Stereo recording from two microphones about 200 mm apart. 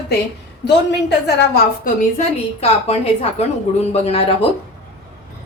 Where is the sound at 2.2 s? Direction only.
30° left (ahead or behind).